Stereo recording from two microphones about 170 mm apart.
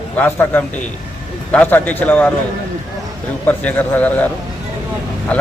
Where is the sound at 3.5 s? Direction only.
10° left (ahead or behind).